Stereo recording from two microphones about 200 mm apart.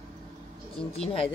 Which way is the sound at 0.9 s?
30° left (ahead or behind).